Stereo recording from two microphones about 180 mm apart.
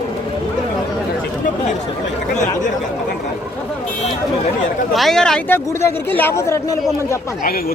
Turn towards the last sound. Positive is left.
turn(degrees=55)  # may be behind; listen again after turning